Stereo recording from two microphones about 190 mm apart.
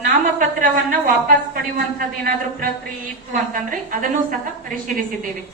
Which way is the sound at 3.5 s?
45° right (ahead or behind).